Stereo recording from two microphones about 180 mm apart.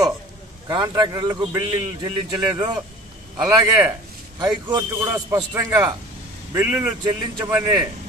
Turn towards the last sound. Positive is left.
turn(degrees=-20)  # may be behind; listen again after turning